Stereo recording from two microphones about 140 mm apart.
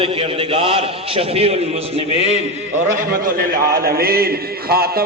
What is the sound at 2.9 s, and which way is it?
A man's voice, 80° right.